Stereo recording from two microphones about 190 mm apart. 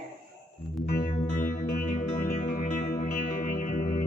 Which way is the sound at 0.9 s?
50° left (ahead or behind).